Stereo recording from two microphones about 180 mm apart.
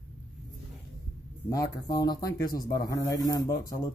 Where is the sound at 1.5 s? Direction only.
20° left (ahead or behind).